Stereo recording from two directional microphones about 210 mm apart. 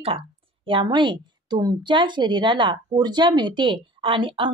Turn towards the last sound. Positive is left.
turn(degrees=-25)  # may be behind; listen again after turning